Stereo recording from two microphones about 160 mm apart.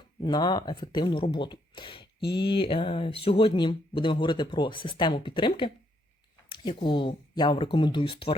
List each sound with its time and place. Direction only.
0.2 s speech: 30° left (ahead or behind)